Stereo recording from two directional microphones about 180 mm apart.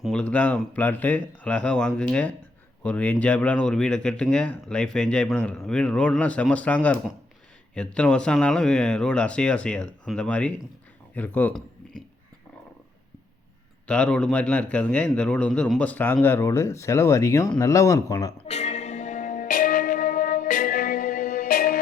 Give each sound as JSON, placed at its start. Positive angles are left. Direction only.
{"t": 0.0, "sound": "a man's voice", "side_deg": 5}
{"t": 13.8, "sound": "a man's voice", "side_deg": 5}
{"t": 18.4, "sound": "music", "side_deg": 35}